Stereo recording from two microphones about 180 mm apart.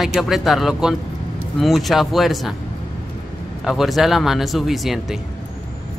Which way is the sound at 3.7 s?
Centre (ahead or behind).